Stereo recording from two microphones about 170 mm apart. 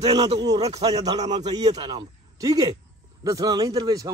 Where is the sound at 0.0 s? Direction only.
25° right (ahead or behind).